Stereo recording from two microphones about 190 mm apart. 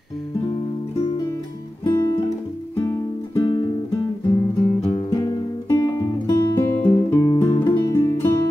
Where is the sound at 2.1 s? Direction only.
20° left (ahead or behind).